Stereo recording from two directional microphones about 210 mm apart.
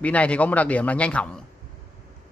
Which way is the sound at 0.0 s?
5° left (ahead or behind).